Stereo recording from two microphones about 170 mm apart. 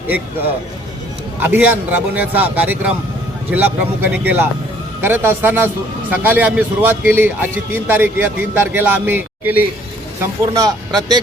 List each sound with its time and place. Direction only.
1.4 s a man's voice: 15° right (ahead or behind)